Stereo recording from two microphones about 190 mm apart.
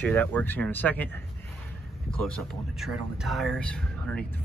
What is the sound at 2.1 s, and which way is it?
Speech, 5° left (ahead or behind).